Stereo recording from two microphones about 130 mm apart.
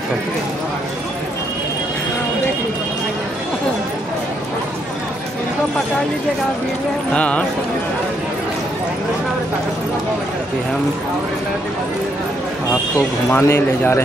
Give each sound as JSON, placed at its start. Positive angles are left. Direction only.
{"t": 7.2, "sound": "speech", "side_deg": 10}
{"t": 13.3, "sound": "a man's voice", "side_deg": 20}